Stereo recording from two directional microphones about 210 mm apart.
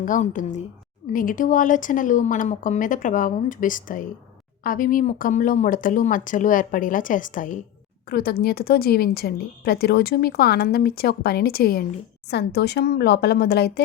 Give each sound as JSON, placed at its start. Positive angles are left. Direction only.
{"t": 0.0, "sound": "a woman's voice", "side_deg": 40}